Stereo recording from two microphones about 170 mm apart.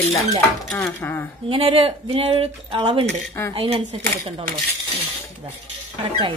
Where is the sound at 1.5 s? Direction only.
35° right (ahead or behind).